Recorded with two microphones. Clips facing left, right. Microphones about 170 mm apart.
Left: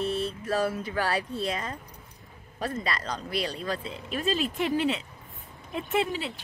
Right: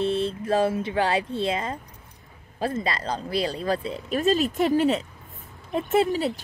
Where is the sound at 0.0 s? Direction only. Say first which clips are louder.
Right 5 dB; 30° right (ahead or behind).